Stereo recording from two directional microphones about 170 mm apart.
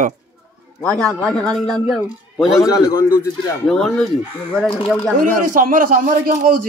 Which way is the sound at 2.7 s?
20° left (ahead or behind).